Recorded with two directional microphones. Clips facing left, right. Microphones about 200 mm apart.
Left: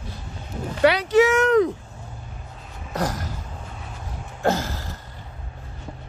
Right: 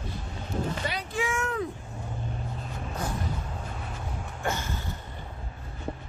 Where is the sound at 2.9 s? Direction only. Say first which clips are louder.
Left 7 dB; 90° left.